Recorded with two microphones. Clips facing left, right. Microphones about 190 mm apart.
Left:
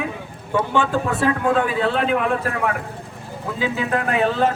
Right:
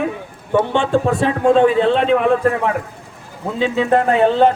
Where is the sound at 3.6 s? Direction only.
30° right (ahead or behind).